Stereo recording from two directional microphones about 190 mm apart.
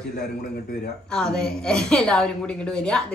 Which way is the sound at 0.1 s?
50° left (ahead or behind).